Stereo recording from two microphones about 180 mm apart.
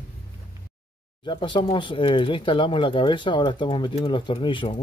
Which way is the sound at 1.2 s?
25° left (ahead or behind).